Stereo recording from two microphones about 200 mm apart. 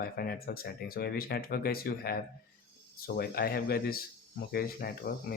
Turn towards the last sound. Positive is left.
turn(degrees=45)  # may be behind; listen again after turning